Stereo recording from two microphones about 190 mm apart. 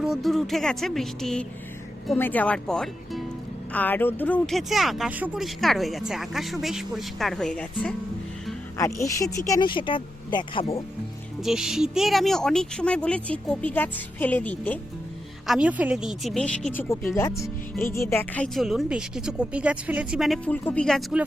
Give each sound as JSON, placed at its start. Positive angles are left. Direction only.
{"t": 0.0, "sound": "speech", "side_deg": 0}
{"t": 8.8, "sound": "speech", "side_deg": 15}
{"t": 11.3, "sound": "speech", "side_deg": 0}
{"t": 15.4, "sound": "speech", "side_deg": -5}
{"t": 16.9, "sound": "speech", "side_deg": 15}